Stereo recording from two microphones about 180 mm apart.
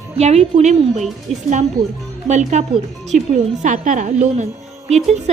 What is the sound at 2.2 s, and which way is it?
A woman's voice, 40° right (ahead or behind).